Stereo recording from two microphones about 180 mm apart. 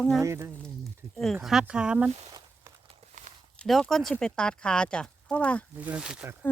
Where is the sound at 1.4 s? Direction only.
5° right (ahead or behind).